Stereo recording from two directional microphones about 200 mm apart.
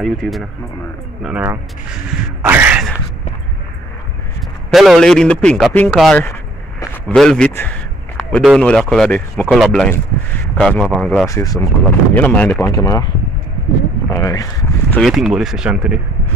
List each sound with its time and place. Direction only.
0.0 s a man's voice: centre (ahead or behind)
4.6 s a man's voice: centre (ahead or behind)
11.2 s speech: 15° left (ahead or behind)
14.1 s speech: 15° left (ahead or behind)
15.0 s a man's voice: centre (ahead or behind)